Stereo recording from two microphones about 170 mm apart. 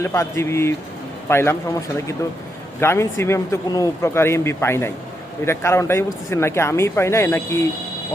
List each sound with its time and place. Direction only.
0.0 s speech: 15° left (ahead or behind)